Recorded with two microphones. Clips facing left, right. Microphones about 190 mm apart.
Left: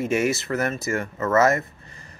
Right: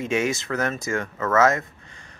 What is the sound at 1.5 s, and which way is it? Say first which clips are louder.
Speech: left 2 dB; 90° right.